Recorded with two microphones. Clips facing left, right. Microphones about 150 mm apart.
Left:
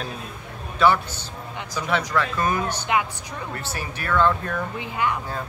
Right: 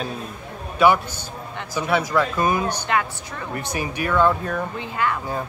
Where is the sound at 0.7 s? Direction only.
10° right (ahead or behind).